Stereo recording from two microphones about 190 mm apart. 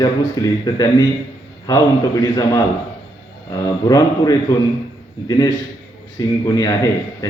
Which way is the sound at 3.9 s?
20° left (ahead or behind).